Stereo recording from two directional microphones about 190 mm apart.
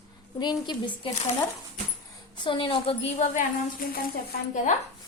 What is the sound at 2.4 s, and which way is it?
A woman's voice, 25° left (ahead or behind).